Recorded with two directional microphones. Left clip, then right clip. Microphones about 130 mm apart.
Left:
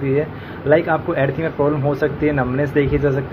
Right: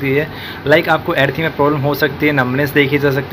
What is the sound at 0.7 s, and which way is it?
Speech, 10° right (ahead or behind).